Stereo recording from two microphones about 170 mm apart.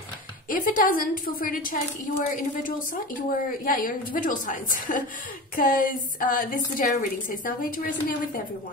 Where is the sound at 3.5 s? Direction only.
55° left (ahead or behind).